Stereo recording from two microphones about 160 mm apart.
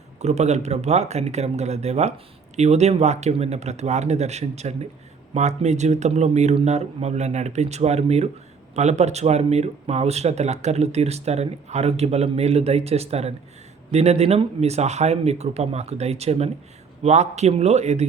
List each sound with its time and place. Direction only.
0.2 s speech: 45° right (ahead or behind)